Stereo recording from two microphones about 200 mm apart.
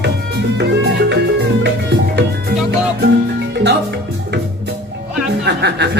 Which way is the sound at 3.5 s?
60° right (ahead or behind).